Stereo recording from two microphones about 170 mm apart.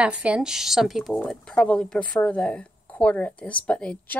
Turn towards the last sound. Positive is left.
turn(degrees=5)  # may be behind; listen again after turning